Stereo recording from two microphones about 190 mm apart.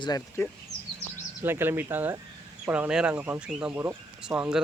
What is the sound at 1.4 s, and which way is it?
Speech, 10° right (ahead or behind).